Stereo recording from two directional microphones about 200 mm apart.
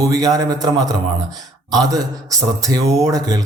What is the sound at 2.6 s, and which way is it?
Speech, 15° right (ahead or behind).